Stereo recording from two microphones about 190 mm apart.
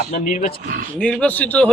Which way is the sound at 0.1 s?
45° left (ahead or behind).